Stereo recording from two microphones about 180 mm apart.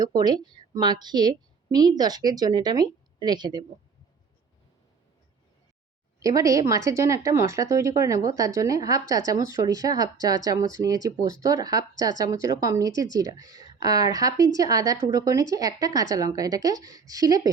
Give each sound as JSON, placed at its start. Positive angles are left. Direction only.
{"t": 0.0, "sound": "a woman's voice", "side_deg": -20}
{"t": 6.2, "sound": "a woman's voice", "side_deg": -20}